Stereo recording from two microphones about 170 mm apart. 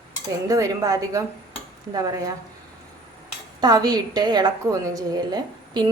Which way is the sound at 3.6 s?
25° right (ahead or behind).